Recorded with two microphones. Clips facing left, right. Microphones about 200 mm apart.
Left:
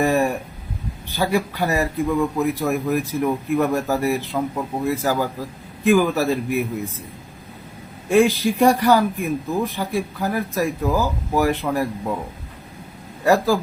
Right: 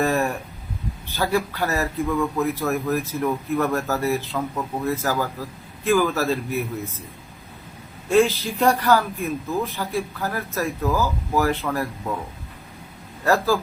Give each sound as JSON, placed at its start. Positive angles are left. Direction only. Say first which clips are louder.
{"t": 0.0, "sound": "a sound", "louder": "left 3 dB", "side_deg": 15}
{"t": 1.1, "sound": "speech", "louder": "left 2 dB", "side_deg": 15}
{"t": 8.1, "sound": "speech", "louder": "left 2 dB", "side_deg": 15}
{"t": 13.2, "sound": "speech", "louder": "left 3 dB", "side_deg": 15}